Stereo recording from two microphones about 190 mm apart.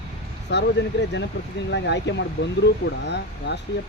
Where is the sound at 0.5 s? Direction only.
70° left (ahead or behind).